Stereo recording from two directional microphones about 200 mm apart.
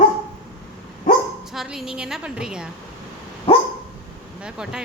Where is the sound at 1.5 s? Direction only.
Centre (ahead or behind).